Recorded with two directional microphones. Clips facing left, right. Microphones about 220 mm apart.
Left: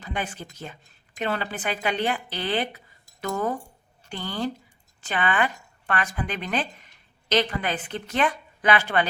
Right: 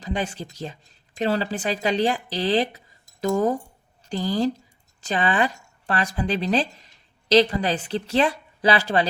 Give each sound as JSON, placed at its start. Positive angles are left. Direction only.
{"t": 0.0, "sound": "speech", "side_deg": -30}